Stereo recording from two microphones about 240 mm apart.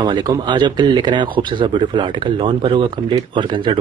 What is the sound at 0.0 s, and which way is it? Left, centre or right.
Speech, centre.